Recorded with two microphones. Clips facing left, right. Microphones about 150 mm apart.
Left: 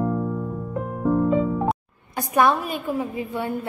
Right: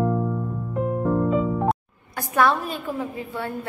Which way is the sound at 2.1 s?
15° left (ahead or behind).